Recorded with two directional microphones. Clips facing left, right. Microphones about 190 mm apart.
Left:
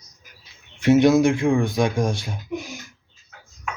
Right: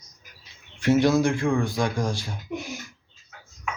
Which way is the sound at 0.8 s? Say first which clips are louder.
Left 4 dB; 20° left (ahead or behind).